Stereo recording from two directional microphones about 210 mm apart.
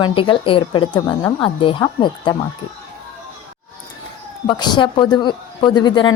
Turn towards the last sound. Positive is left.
turn(degrees=20)  # may be behind; listen again after turning